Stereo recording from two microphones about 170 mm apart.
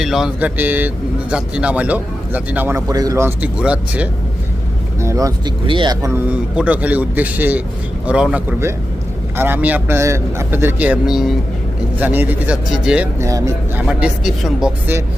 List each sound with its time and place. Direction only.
0.0 s a man's voice: centre (ahead or behind)
4.9 s speech: 20° right (ahead or behind)
6.3 s a man's voice: 10° right (ahead or behind)
13.8 s speech: 5° right (ahead or behind)